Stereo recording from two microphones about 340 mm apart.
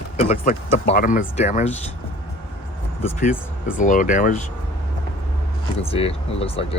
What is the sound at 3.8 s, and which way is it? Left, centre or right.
Speech, left.